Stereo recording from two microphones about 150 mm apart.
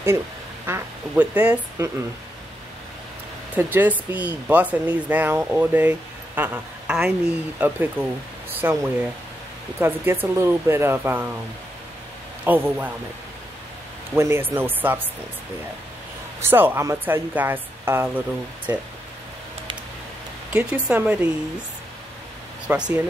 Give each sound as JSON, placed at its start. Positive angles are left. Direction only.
{"t": 0.7, "sound": "speech", "side_deg": -15}
{"t": 3.5, "sound": "speech", "side_deg": -10}
{"t": 12.4, "sound": "speech", "side_deg": -15}
{"t": 14.1, "sound": "speech", "side_deg": -15}
{"t": 16.3, "sound": "speech", "side_deg": -15}
{"t": 20.5, "sound": "speech", "side_deg": -10}
{"t": 22.7, "sound": "speech", "side_deg": -10}